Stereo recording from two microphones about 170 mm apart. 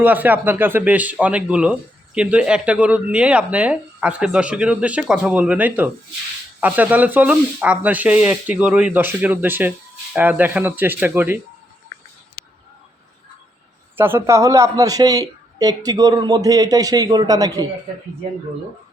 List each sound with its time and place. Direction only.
0.0 s speech: 10° right (ahead or behind)
13.9 s a man's voice: 15° right (ahead or behind)